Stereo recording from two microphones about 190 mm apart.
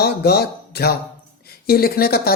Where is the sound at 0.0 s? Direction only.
55° left (ahead or behind).